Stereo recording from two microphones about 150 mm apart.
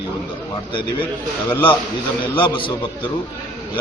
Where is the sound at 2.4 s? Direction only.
35° left (ahead or behind).